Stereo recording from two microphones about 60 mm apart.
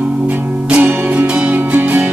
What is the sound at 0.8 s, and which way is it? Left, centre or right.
Music, right.